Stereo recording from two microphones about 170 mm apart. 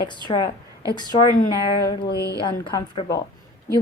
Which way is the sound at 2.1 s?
70° left (ahead or behind).